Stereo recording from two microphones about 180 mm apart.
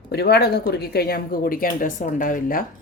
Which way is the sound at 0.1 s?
60° left (ahead or behind).